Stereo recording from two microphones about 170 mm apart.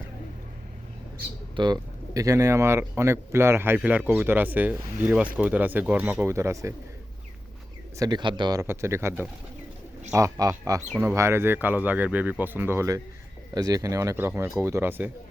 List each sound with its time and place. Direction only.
1.5 s speech: 25° right (ahead or behind)
7.9 s speech: 25° right (ahead or behind)